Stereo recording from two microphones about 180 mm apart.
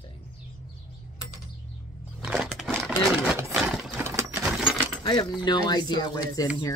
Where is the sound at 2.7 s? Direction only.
5° right (ahead or behind).